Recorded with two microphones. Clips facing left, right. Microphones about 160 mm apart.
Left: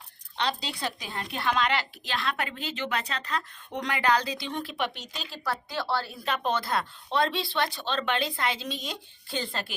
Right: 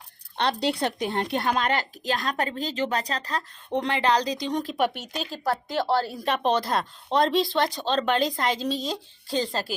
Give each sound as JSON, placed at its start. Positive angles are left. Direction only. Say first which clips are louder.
{"t": 0.3, "sound": "speech", "louder": "right 6 dB", "side_deg": -60}
{"t": 1.4, "sound": "a woman's voice", "louder": "left 1 dB", "side_deg": -45}